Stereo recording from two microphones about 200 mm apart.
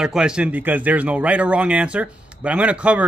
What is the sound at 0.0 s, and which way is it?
Speech, 5° right (ahead or behind).